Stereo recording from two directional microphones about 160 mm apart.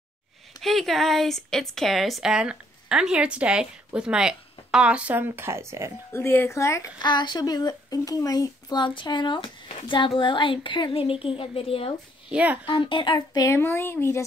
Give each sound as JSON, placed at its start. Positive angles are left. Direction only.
{"t": 0.6, "sound": "a woman's voice", "side_deg": 0}
{"t": 6.1, "sound": "a woman's voice", "side_deg": 15}
{"t": 12.3, "sound": "speech", "side_deg": -10}
{"t": 12.6, "sound": "speech", "side_deg": 30}